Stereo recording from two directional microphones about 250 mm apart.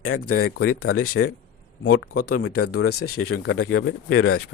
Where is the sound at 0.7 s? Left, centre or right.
Left.